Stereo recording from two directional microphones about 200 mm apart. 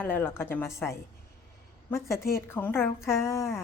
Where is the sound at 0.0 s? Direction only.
10° left (ahead or behind).